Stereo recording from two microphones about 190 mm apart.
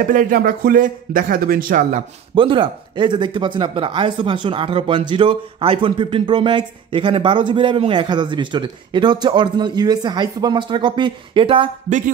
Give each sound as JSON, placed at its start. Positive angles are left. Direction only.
{"t": 0.0, "sound": "speech", "side_deg": -45}
{"t": 2.3, "sound": "speech", "side_deg": -25}